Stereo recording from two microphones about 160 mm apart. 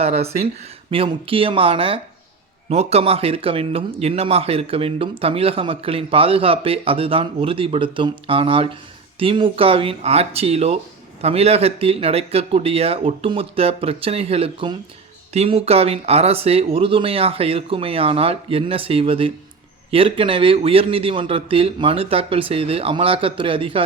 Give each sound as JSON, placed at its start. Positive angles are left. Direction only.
{"t": 0.0, "sound": "speech", "side_deg": -40}